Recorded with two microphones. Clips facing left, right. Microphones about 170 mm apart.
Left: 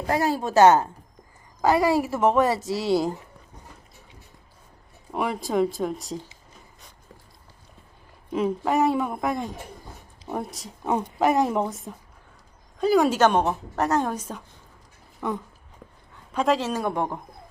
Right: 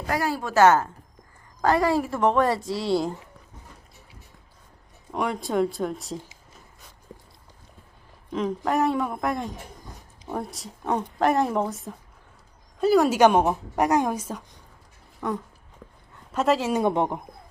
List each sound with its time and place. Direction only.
0.1 s a woman's voice: 20° left (ahead or behind)
1.6 s speech: 5° left (ahead or behind)
5.1 s speech: 5° left (ahead or behind)
8.3 s speech: 10° left (ahead or behind)
13.1 s a woman's voice: 10° right (ahead or behind)
16.8 s speech: 20° right (ahead or behind)